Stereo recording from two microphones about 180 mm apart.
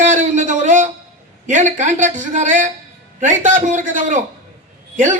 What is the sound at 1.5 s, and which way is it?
A man's voice, 45° right (ahead or behind).